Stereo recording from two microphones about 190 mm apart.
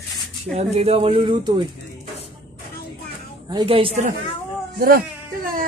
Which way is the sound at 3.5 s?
25° right (ahead or behind).